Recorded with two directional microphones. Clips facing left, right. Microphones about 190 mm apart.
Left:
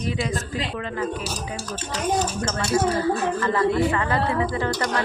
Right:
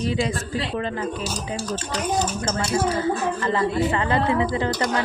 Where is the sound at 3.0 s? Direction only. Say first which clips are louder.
Left 1 dB; 20° right (ahead or behind).